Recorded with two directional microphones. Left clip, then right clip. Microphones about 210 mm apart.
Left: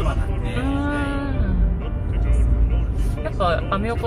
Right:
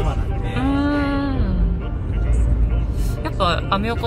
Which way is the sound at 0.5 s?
20° right (ahead or behind).